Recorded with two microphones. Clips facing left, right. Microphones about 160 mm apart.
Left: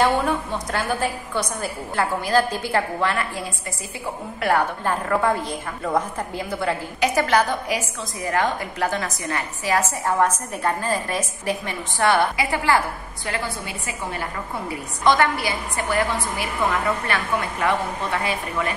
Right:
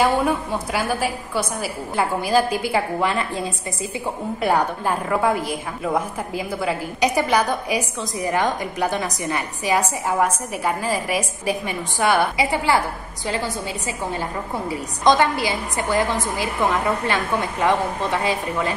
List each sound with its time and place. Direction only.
0.0 s a woman's voice: 10° right (ahead or behind)
15.0 s a woman's voice: 15° right (ahead or behind)
17.1 s a woman's voice: 20° right (ahead or behind)